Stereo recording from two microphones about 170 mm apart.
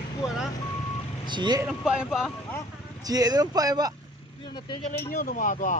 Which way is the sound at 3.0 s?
20° right (ahead or behind).